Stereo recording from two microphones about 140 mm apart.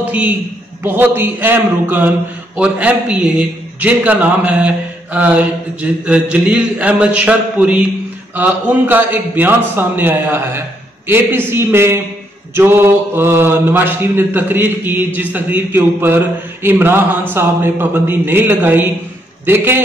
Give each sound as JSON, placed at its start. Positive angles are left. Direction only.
{"t": 0.8, "sound": "a man's voice", "side_deg": -15}